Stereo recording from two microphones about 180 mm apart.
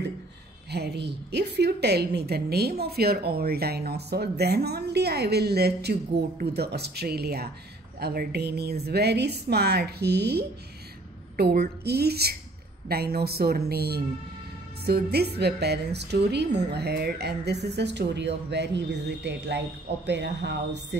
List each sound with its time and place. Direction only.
0.7 s a woman's voice: 65° right (ahead or behind)